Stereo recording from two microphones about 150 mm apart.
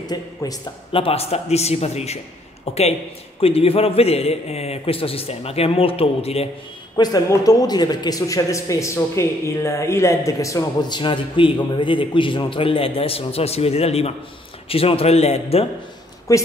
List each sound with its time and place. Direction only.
0.0 s speech: 25° left (ahead or behind)
1.0 s a man's voice: 45° left (ahead or behind)
3.3 s a man's voice: 40° left (ahead or behind)
7.0 s a man's voice: 25° left (ahead or behind); by 15.6 s 45° left (ahead or behind)
16.3 s speech: 20° left (ahead or behind)